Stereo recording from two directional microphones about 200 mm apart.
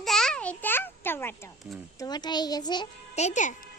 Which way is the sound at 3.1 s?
35° left (ahead or behind).